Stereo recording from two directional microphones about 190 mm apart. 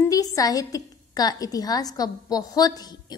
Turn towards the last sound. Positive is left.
turn(degrees=20)  # may be behind; listen again after turning